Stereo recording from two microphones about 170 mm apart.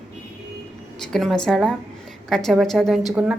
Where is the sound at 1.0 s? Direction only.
5° left (ahead or behind).